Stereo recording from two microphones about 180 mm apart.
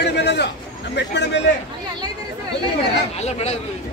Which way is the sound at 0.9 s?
75° left (ahead or behind).